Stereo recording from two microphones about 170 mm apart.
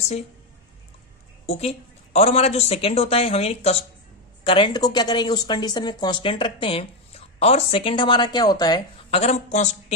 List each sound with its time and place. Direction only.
1.4 s a woman's voice: 40° left (ahead or behind)
9.1 s a woman's voice: 40° left (ahead or behind)